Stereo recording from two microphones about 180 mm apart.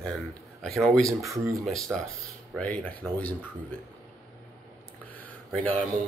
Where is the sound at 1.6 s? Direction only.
Centre (ahead or behind).